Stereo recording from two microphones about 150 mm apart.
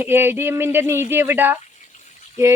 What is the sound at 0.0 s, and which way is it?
Speech, 15° right (ahead or behind).